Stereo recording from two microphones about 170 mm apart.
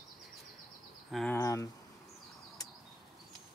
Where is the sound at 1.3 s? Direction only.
20° left (ahead or behind).